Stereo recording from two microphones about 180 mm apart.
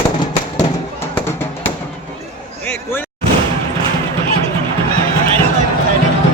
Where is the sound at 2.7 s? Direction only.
10° left (ahead or behind).